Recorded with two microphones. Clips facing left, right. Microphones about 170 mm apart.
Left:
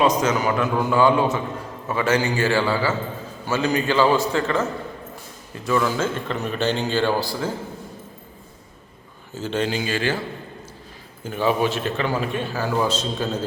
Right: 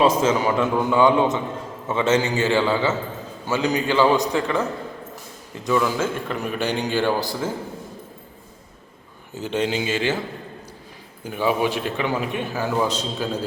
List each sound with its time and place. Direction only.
0.0 s a man's voice: 30° right (ahead or behind)
5.6 s speech: 10° right (ahead or behind)
9.3 s a man's voice: 20° right (ahead or behind)
11.2 s speech: 15° right (ahead or behind)